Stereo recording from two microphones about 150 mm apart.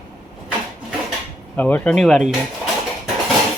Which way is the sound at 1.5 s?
10° left (ahead or behind).